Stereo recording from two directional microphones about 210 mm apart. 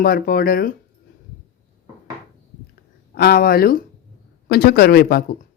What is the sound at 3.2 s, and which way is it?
Speech, 45° left (ahead or behind).